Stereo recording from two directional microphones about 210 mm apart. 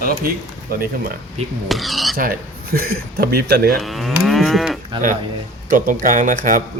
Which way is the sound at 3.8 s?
Centre (ahead or behind).